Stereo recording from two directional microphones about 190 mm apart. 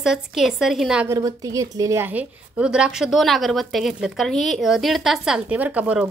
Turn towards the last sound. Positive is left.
turn(degrees=-5)  # may be behind; listen again after turning